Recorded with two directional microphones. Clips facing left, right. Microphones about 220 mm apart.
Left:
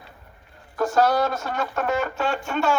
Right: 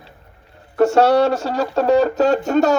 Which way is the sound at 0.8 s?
70° right (ahead or behind).